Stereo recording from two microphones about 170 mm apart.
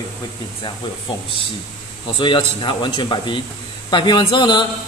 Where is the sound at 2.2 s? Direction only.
30° left (ahead or behind).